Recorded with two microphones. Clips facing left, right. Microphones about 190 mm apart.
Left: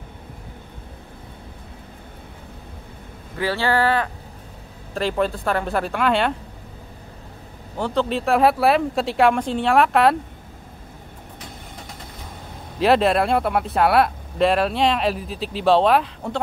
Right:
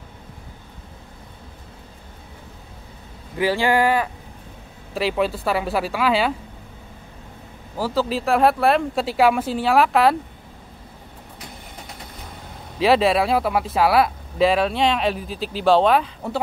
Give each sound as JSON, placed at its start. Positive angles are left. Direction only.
{"t": 3.3, "sound": "speech", "side_deg": -15}
{"t": 7.7, "sound": "speech", "side_deg": -5}
{"t": 12.7, "sound": "speech", "side_deg": 0}